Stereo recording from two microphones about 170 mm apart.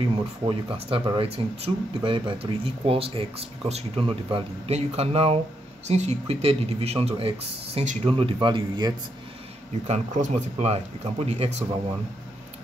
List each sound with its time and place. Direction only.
0.5 s a man's voice: 35° right (ahead or behind)
9.8 s speech: 40° right (ahead or behind)